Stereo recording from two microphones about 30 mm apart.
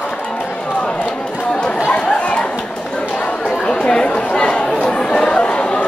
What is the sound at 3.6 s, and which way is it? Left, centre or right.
Chatter, left.